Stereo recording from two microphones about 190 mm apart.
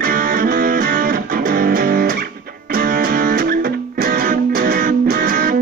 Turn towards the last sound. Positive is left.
turn(degrees=-50)  # may be behind; listen again after turning